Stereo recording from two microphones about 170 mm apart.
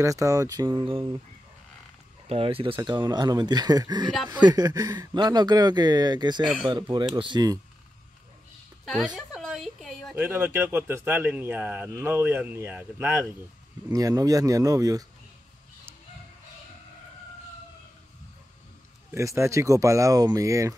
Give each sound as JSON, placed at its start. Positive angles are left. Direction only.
{"t": 0.0, "sound": "speech", "side_deg": -20}
{"t": 2.2, "sound": "speech", "side_deg": -35}
{"t": 8.8, "sound": "a sound", "side_deg": 0}
{"t": 10.1, "sound": "speech", "side_deg": -10}
{"t": 19.1, "sound": "speech", "side_deg": -15}